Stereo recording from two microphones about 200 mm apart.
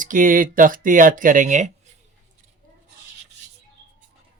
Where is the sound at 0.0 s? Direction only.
40° right (ahead or behind).